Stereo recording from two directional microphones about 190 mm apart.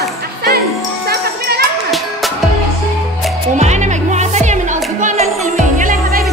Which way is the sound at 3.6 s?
40° right (ahead or behind).